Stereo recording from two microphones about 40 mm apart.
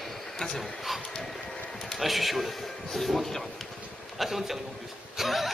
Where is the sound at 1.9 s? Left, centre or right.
Centre.